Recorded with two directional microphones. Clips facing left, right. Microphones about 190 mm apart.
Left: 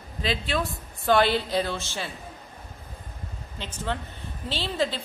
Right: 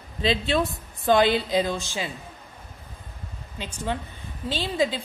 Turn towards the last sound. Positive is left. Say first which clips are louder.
# right 3 dB
turn(degrees=-10)  # may be behind; listen again after turning